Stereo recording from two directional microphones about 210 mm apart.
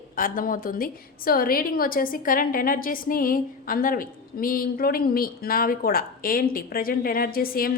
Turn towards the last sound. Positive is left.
turn(degrees=45)  # may be behind; listen again after turning